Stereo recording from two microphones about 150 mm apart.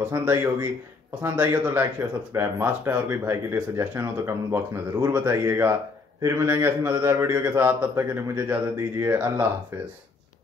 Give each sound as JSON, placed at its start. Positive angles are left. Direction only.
{"t": 0.2, "sound": "speech", "side_deg": -15}